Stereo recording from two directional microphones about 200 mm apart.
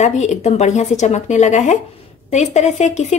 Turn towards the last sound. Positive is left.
turn(degrees=35)  # may be behind; listen again after turning